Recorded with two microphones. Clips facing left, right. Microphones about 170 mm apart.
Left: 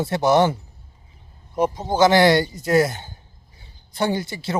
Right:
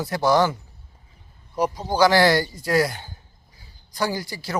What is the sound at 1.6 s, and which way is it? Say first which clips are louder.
Speech: left 2 dB; 25° left (ahead or behind).